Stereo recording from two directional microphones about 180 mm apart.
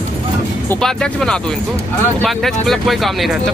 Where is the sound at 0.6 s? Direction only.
5° left (ahead or behind).